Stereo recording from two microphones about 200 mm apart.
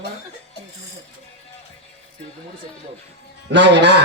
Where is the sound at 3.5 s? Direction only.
60° right (ahead or behind).